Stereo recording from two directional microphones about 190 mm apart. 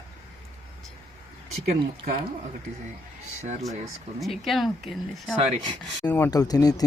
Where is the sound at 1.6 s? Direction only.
35° right (ahead or behind).